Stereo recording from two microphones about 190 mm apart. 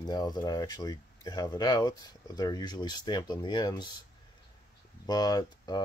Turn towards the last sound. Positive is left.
turn(degrees=20)  # may be behind; listen again after turning